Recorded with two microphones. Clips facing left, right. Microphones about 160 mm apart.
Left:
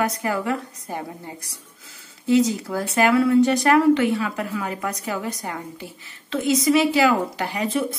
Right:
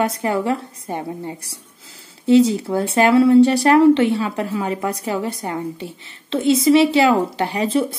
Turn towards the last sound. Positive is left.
turn(degrees=-30)  # may be behind; listen again after turning